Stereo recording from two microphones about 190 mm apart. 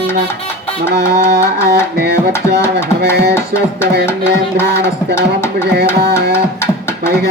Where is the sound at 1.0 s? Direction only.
60° right (ahead or behind).